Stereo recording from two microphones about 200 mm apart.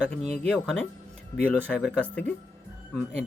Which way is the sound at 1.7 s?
5° right (ahead or behind).